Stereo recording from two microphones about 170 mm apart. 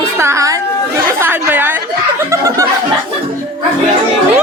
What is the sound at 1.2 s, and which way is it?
Chatter, 10° right (ahead or behind).